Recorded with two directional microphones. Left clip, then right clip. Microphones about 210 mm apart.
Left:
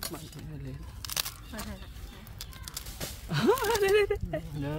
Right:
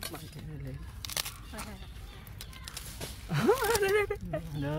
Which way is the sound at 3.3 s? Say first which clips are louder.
Left 1 dB; 10° left (ahead or behind).